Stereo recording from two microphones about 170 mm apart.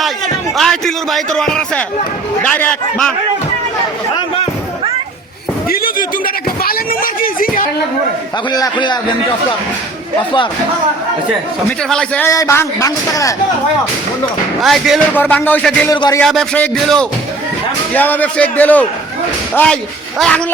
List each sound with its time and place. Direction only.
0.5 s a man's voice: centre (ahead or behind)
5.6 s speech: 60° left (ahead or behind)
8.4 s speech: 25° left (ahead or behind)
11.8 s speech: 5° left (ahead or behind)
12.3 s speech: 20° left (ahead or behind)
14.6 s speech: centre (ahead or behind)
15.1 s a man's voice: 10° left (ahead or behind)
15.9 s speech: 20° left (ahead or behind)
16.2 s a man's voice: centre (ahead or behind)